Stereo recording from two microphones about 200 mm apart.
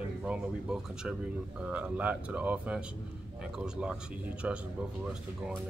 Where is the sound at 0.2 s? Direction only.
5° right (ahead or behind).